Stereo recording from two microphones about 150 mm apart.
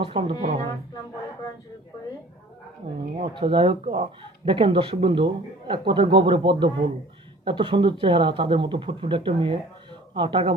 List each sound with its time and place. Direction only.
0.0 s speech: 35° right (ahead or behind)
3.2 s speech: 35° right (ahead or behind)